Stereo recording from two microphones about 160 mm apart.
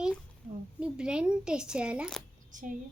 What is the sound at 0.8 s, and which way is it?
A woman's voice, 5° right (ahead or behind).